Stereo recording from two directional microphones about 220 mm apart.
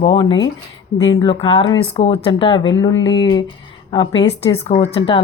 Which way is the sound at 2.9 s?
55° left (ahead or behind).